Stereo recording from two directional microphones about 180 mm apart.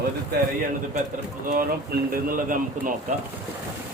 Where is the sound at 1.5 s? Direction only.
55° right (ahead or behind).